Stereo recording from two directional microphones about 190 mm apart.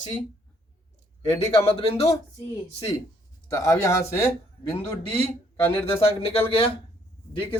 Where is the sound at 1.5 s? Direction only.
30° left (ahead or behind).